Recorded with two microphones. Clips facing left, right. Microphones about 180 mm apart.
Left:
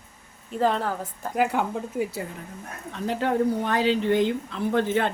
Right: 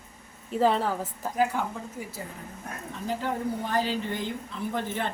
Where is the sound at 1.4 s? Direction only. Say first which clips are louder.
Left 3 dB; 65° left (ahead or behind).